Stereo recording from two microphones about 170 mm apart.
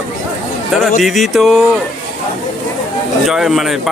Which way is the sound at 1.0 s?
Centre (ahead or behind).